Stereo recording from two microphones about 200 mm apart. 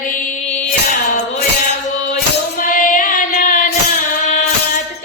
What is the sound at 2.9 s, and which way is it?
Music, 45° left (ahead or behind).